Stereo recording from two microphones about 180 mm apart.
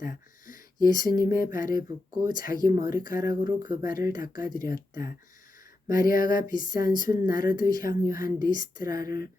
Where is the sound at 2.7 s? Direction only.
20° right (ahead or behind).